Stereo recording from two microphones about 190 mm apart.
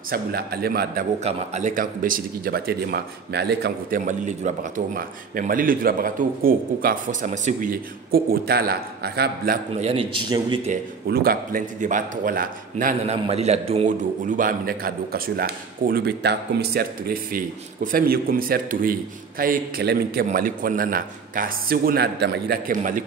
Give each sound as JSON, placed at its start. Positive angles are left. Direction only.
{"t": 0.1, "sound": "speech", "side_deg": -55}
{"t": 1.2, "sound": "speech", "side_deg": -40}
{"t": 9.8, "sound": "speech", "side_deg": -30}
{"t": 11.1, "sound": "speech", "side_deg": -50}
{"t": 13.0, "sound": "speech", "side_deg": -35}
{"t": 22.7, "sound": "speech", "side_deg": -45}